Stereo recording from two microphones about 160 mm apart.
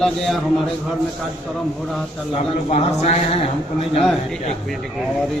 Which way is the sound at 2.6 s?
45° left (ahead or behind).